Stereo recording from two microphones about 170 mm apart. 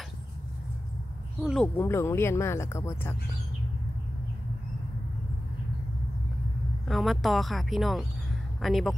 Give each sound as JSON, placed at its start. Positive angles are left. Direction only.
{"t": 1.4, "sound": "speech", "side_deg": 0}
{"t": 1.8, "sound": "speech", "side_deg": 15}
{"t": 6.9, "sound": "speech", "side_deg": 0}